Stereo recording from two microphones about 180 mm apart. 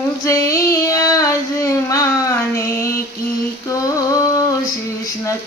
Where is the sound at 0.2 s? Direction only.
15° left (ahead or behind).